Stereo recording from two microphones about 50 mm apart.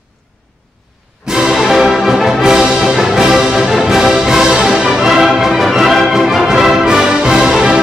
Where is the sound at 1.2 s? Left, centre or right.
Centre.